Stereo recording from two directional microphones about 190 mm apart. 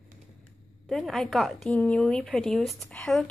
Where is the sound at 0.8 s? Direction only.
Centre (ahead or behind).